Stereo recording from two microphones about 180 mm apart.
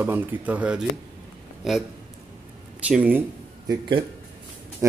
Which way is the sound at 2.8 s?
5° right (ahead or behind).